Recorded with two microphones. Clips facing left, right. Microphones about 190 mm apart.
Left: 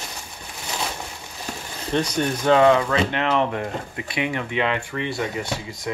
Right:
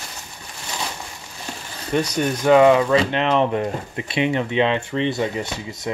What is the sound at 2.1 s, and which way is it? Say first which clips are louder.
Speech: right 4 dB; 10° right (ahead or behind).